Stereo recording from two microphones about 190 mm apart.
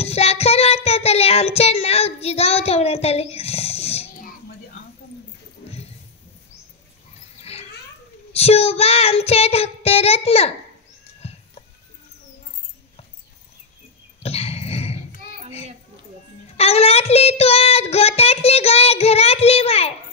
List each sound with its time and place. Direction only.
0.0 s child singing: 35° left (ahead or behind)
7.5 s a sound: 30° left (ahead or behind)
8.3 s child singing: 30° left (ahead or behind)
11.2 s music: 35° left (ahead or behind)
14.2 s dog: 35° left (ahead or behind)
16.5 s child singing: 30° left (ahead or behind)